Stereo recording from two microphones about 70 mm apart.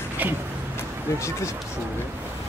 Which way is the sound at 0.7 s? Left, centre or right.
Left.